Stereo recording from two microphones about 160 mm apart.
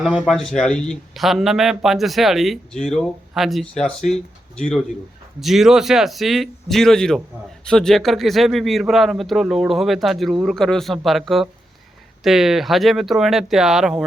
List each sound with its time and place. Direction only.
0.0 s a man's voice: centre (ahead or behind)